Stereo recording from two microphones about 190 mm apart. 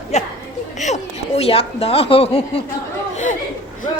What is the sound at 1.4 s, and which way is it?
A woman's voice, 30° left (ahead or behind).